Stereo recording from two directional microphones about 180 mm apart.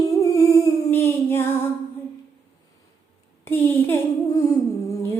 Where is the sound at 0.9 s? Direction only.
15° left (ahead or behind).